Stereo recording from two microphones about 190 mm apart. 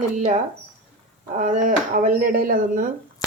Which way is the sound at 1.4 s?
45° right (ahead or behind).